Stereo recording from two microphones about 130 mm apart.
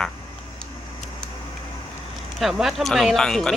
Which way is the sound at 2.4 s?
Centre (ahead or behind).